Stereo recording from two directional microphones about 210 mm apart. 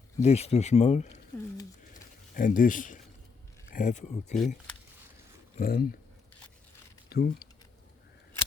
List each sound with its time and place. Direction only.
0.2 s speech: 30° left (ahead or behind)
1.9 s a sound: 40° left (ahead or behind)
3.7 s speech: 40° left (ahead or behind)
5.5 s speech: 45° left (ahead or behind)
7.1 s speech: 45° left (ahead or behind)